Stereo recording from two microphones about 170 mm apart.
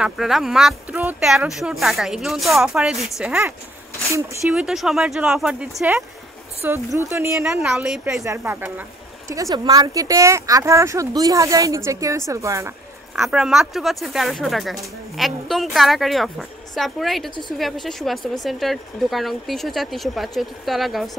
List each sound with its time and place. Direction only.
0.0 s speech: centre (ahead or behind)
4.6 s speech: centre (ahead or behind)
6.6 s speech: 15° right (ahead or behind)
8.2 s speech: 15° right (ahead or behind)
13.1 s speech: 5° right (ahead or behind)